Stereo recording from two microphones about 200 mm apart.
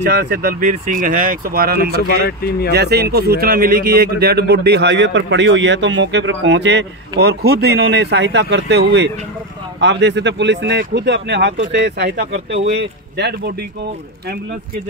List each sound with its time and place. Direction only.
0.0 s a man's voice: 55° right (ahead or behind)